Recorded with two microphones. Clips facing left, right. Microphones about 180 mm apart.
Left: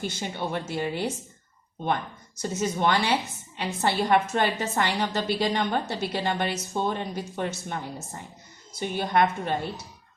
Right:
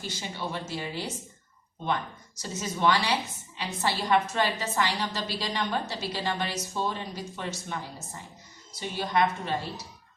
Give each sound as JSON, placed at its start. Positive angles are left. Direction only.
{"t": 0.0, "sound": "a woman's voice", "side_deg": 55}
{"t": 8.8, "sound": "a woman's voice", "side_deg": 55}